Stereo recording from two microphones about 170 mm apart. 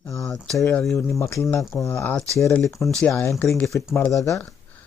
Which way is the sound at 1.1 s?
15° left (ahead or behind).